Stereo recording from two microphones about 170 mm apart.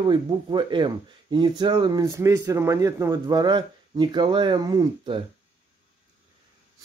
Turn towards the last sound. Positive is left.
turn(degrees=-25)  # may be behind; listen again after turning